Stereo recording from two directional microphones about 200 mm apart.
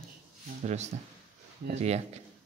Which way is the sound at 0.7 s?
35° right (ahead or behind).